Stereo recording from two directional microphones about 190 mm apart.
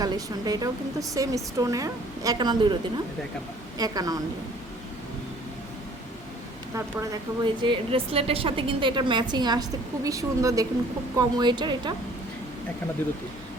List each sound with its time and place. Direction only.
0.0 s a woman's voice: 20° right (ahead or behind)
3.8 s a woman's voice: 20° right (ahead or behind)
6.7 s a woman's voice: 20° right (ahead or behind)